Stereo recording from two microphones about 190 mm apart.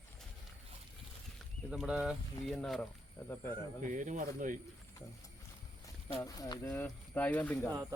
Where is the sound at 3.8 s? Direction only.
40° right (ahead or behind).